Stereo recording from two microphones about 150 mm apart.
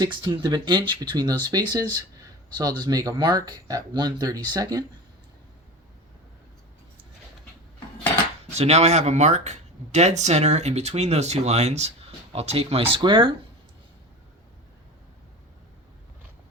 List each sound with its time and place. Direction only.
0.0 s speech: 30° right (ahead or behind)
2.8 s speech: 25° right (ahead or behind)
8.5 s speech: 45° right (ahead or behind)